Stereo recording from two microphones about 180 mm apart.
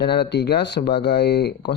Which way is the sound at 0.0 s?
70° left (ahead or behind).